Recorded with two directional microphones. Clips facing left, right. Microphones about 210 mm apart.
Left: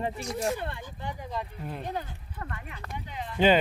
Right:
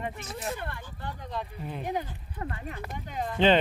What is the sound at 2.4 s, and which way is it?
Speech, 30° right (ahead or behind).